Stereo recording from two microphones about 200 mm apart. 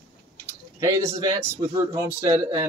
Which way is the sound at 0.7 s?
15° right (ahead or behind).